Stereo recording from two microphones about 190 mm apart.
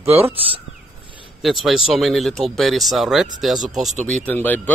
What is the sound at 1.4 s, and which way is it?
Speech, centre (ahead or behind).